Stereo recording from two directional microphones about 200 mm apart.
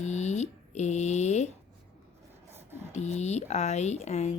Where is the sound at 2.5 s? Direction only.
10° right (ahead or behind).